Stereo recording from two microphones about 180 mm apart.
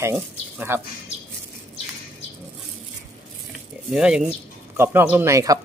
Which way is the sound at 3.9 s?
5° right (ahead or behind).